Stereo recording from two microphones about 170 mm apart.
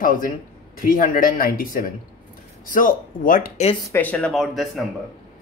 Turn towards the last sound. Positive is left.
turn(degrees=0)  # may be behind; listen again after turning